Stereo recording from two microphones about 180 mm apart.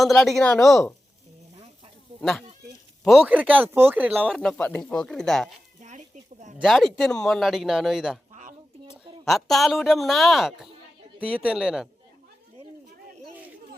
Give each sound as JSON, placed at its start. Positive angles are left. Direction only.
{"t": 0.0, "sound": "a man's voice", "side_deg": 0}
{"t": 3.0, "sound": "speech", "side_deg": 0}
{"t": 4.4, "sound": "a man's voice", "side_deg": 5}
{"t": 6.6, "sound": "a man's voice", "side_deg": 0}
{"t": 8.3, "sound": "a sound", "side_deg": -40}
{"t": 9.2, "sound": "a man's voice", "side_deg": 0}